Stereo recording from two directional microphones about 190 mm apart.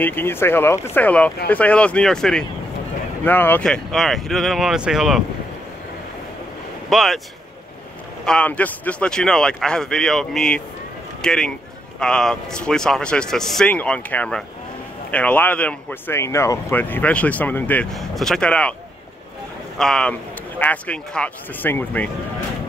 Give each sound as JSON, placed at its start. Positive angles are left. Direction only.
{"t": 0.0, "sound": "speech", "side_deg": 10}
{"t": 6.9, "sound": "speech", "side_deg": 0}
{"t": 8.3, "sound": "speech", "side_deg": 5}
{"t": 19.8, "sound": "speech", "side_deg": 5}